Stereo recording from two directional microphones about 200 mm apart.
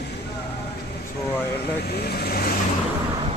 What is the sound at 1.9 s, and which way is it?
Speech, 55° left (ahead or behind).